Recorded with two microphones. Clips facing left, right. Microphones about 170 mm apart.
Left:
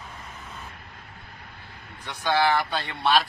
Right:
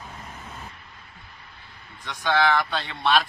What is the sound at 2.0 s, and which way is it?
Speech, 10° left (ahead or behind).